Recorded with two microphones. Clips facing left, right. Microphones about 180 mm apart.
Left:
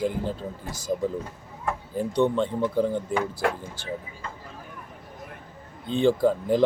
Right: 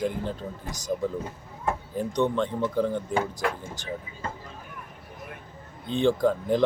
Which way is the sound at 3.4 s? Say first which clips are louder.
Left 3 dB; 55° left (ahead or behind).